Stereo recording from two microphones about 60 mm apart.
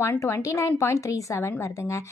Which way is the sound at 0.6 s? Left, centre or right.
Left.